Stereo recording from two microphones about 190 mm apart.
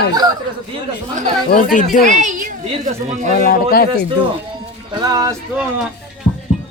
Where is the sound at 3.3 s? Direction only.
50° left (ahead or behind).